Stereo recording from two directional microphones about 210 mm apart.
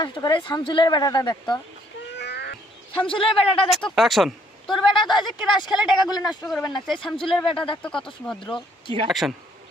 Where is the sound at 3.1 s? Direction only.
25° left (ahead or behind).